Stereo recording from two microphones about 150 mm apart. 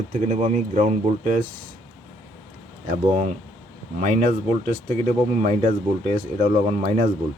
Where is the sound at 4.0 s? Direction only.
55° right (ahead or behind).